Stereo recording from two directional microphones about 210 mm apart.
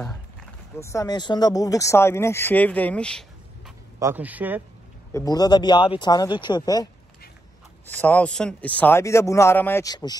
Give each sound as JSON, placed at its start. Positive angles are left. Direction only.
{"t": 0.7, "sound": "speech", "side_deg": 15}
{"t": 4.0, "sound": "speech", "side_deg": -10}
{"t": 5.1, "sound": "speech", "side_deg": 15}
{"t": 7.9, "sound": "speech", "side_deg": 5}